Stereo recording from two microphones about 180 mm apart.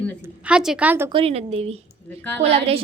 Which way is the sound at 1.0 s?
30° right (ahead or behind).